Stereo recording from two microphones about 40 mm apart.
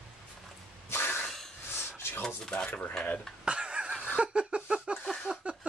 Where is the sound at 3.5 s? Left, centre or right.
Right.